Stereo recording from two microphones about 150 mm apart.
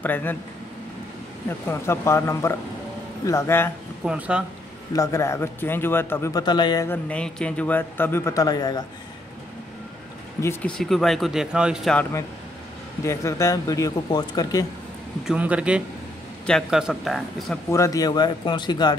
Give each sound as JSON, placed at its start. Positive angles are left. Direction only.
{"t": 0.0, "sound": "a man's voice", "side_deg": 15}
{"t": 1.7, "sound": "a man's voice", "side_deg": 20}
{"t": 4.0, "sound": "speech", "side_deg": -5}
{"t": 4.9, "sound": "a man's voice", "side_deg": 20}
{"t": 6.4, "sound": "speech", "side_deg": 30}
{"t": 6.9, "sound": "a man's voice", "side_deg": 10}
{"t": 10.4, "sound": "a man's voice", "side_deg": 15}
{"t": 10.7, "sound": "speech", "side_deg": 0}
{"t": 12.0, "sound": "speech", "side_deg": 20}
{"t": 15.2, "sound": "speech", "side_deg": -10}
{"t": 17.6, "sound": "speech", "side_deg": 20}